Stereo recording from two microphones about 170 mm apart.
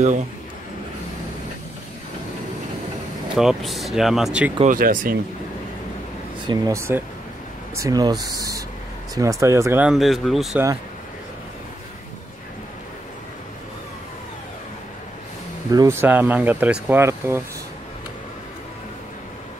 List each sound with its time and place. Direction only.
3.3 s speech: centre (ahead or behind)
4.6 s speech: 55° right (ahead or behind)
6.4 s speech: 20° right (ahead or behind); by 10.6 s centre (ahead or behind)
15.7 s speech: 20° right (ahead or behind)